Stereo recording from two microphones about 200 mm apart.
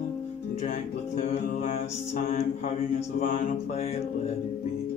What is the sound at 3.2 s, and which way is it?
Music, 35° left (ahead or behind).